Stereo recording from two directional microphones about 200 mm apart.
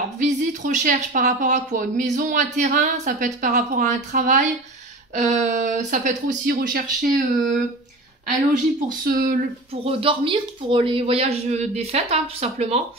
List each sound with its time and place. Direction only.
0.2 s speech: 40° right (ahead or behind)
9.0 s speech: 45° right (ahead or behind)
9.8 s speech: 25° right (ahead or behind)